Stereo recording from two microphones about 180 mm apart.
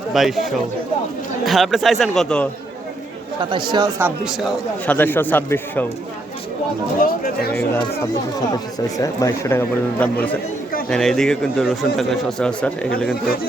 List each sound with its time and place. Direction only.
0.1 s speech: centre (ahead or behind)
1.5 s speech: centre (ahead or behind)
3.5 s speech: 25° right (ahead or behind)
4.0 s speech: 5° right (ahead or behind)
4.9 s a man's voice: 10° left (ahead or behind)
9.0 s a man's voice: 15° left (ahead or behind)
13.2 s speech: 55° left (ahead or behind)